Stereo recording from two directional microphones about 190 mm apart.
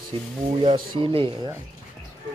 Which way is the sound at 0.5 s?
30° right (ahead or behind).